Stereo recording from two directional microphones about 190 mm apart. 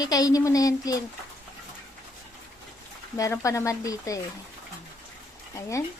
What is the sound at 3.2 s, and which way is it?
Speech, 15° left (ahead or behind).